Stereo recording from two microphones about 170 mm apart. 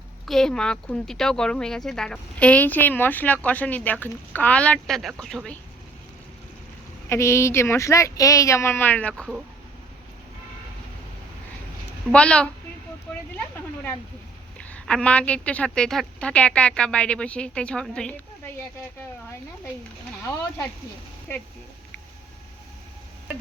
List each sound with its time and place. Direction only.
0.3 s speech: 5° left (ahead or behind)
7.1 s speech: 15° left (ahead or behind)
12.1 s speech: 5° left (ahead or behind)
14.6 s speech: 5° left (ahead or behind)